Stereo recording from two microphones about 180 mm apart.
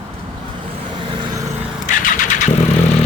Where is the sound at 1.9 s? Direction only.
45° left (ahead or behind).